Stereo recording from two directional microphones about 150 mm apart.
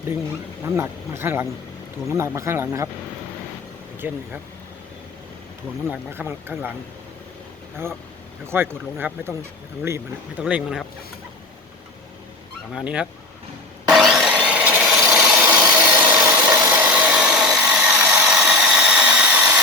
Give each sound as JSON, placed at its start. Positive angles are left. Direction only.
{"t": 0.6, "sound": "speech", "side_deg": -15}
{"t": 4.0, "sound": "speech", "side_deg": -10}
{"t": 5.9, "sound": "speech", "side_deg": -15}
{"t": 8.4, "sound": "speech", "side_deg": -15}
{"t": 10.4, "sound": "speech", "side_deg": 0}
{"t": 12.7, "sound": "speech", "side_deg": -5}
{"t": 13.9, "sound": "wood", "side_deg": 0}
{"t": 16.6, "sound": "tools", "side_deg": -10}